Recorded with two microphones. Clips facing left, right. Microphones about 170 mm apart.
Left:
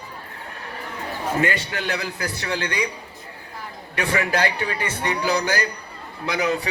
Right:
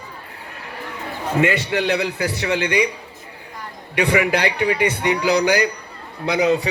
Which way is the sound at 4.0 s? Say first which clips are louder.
Right 4 dB; 15° right (ahead or behind).